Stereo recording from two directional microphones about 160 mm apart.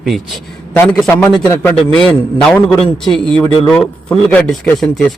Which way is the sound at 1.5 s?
15° left (ahead or behind).